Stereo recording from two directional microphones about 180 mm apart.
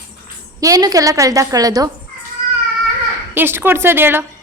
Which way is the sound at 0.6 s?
20° right (ahead or behind).